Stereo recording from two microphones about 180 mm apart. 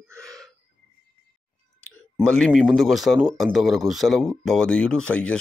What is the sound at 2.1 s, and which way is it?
A man's voice, 5° left (ahead or behind).